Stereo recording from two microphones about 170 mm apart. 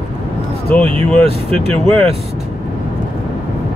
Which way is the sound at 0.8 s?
35° right (ahead or behind).